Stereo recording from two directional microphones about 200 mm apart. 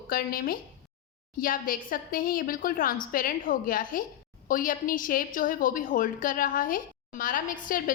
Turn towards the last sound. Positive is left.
turn(degrees=45)  # may be behind; listen again after turning